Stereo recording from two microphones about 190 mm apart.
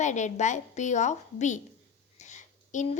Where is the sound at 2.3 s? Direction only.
40° left (ahead or behind).